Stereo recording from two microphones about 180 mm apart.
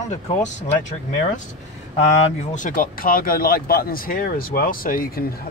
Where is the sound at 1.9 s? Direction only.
40° left (ahead or behind).